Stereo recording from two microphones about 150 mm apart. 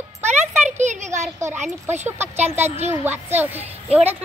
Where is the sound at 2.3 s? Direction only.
45° right (ahead or behind).